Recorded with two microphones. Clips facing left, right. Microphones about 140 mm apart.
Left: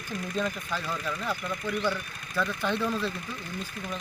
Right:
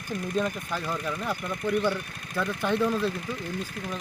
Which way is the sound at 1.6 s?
50° right (ahead or behind).